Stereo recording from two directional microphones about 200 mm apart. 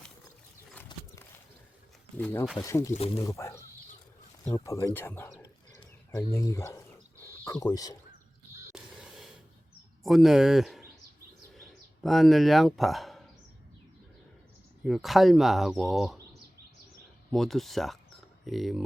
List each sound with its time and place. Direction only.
0.9 s horse: 20° left (ahead or behind)
2.1 s speech: 10° left (ahead or behind)
8.7 s crow: 5° right (ahead or behind)
10.0 s speech: centre (ahead or behind)
14.8 s speech: centre (ahead or behind)
17.3 s speech: centre (ahead or behind)